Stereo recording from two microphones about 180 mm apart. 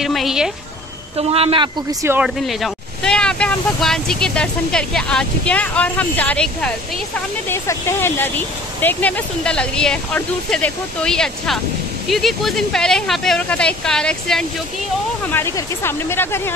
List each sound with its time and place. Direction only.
0.0 s speech: centre (ahead or behind)
1.1 s speech: 35° right (ahead or behind)
2.0 s speech: 5° right (ahead or behind); by 16.5 s 15° left (ahead or behind)